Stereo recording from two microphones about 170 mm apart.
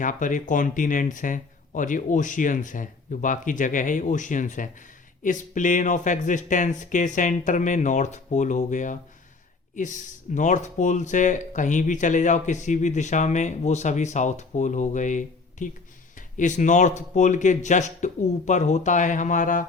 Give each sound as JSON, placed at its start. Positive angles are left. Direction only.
{"t": 0.0, "sound": "speech", "side_deg": 50}